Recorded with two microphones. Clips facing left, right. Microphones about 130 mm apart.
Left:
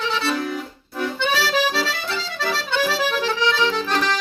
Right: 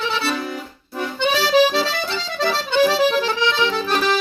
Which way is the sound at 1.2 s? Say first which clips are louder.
Right 6 dB; 20° right (ahead or behind).